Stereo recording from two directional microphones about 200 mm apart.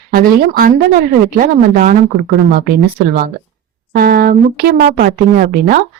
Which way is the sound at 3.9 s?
50° right (ahead or behind).